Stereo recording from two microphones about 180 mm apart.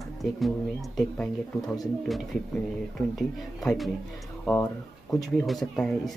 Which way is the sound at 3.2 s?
Centre (ahead or behind).